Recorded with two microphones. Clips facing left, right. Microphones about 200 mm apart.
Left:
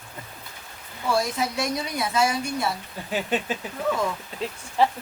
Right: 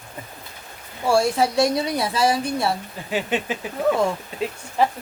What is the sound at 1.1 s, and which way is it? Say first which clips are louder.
Speech: right 6 dB; 30° right (ahead or behind).